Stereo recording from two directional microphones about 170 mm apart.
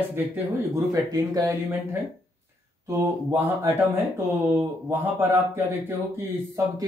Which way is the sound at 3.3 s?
15° right (ahead or behind).